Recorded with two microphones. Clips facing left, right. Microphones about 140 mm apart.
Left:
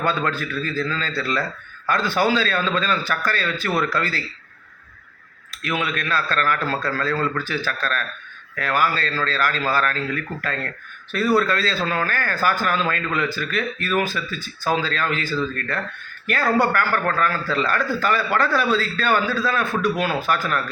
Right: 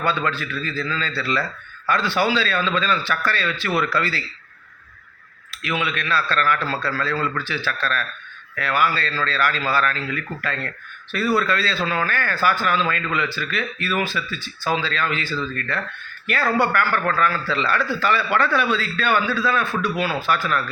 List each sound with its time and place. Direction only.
0.3 s speech: 45° left (ahead or behind)
5.6 s a man's voice: 45° left (ahead or behind)